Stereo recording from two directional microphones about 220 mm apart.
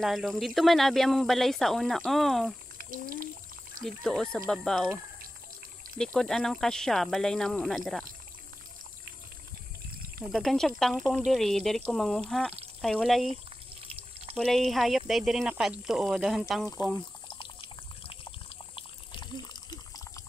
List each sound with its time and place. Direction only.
0.0 s speech: centre (ahead or behind)
3.8 s speech: centre (ahead or behind)
6.1 s speech: centre (ahead or behind)
10.3 s speech: centre (ahead or behind)
14.3 s speech: centre (ahead or behind)
16.7 s water: 15° left (ahead or behind)